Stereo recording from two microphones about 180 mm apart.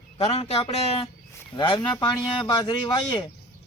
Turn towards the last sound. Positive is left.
turn(degrees=25)  # may be behind; listen again after turning